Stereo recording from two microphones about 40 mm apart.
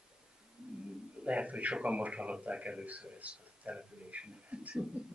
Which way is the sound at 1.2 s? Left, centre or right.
Right.